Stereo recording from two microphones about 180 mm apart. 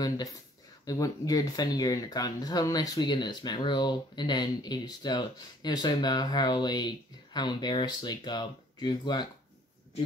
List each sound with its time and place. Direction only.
0.0 s speech: 20° left (ahead or behind)